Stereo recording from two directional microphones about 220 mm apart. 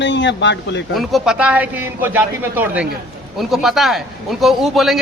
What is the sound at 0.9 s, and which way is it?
A man's voice, centre (ahead or behind).